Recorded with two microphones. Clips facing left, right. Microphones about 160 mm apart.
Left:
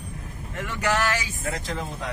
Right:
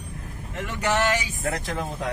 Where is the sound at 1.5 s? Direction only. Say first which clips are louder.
Right 2 dB; 55° right (ahead or behind).